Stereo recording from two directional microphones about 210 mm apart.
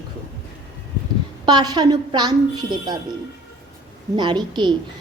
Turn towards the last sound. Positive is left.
turn(degrees=-20)  # may be behind; listen again after turning